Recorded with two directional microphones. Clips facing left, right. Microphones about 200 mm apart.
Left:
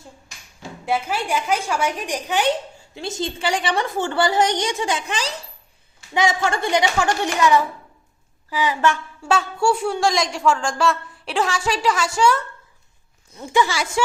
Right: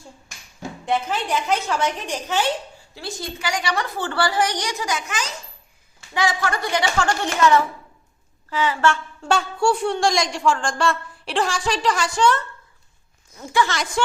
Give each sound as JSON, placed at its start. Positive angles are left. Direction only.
{"t": 0.9, "sound": "a woman's voice", "side_deg": 10}
{"t": 9.2, "sound": "a woman's voice", "side_deg": 0}
{"t": 13.5, "sound": "a woman's voice", "side_deg": 15}